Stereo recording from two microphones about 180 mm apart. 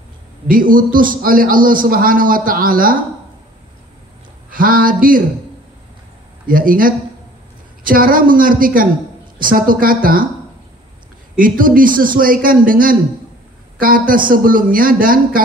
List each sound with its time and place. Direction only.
0.5 s a man's voice: 50° right (ahead or behind)
4.5 s a man's voice: 50° right (ahead or behind)
6.4 s a man's voice: 50° right (ahead or behind)
11.3 s a man's voice: 50° right (ahead or behind)